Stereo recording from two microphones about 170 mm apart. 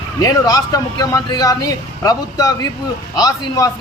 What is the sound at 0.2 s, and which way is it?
A man's voice, 20° left (ahead or behind).